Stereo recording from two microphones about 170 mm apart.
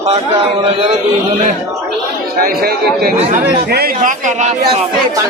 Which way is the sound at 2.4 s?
60° right (ahead or behind).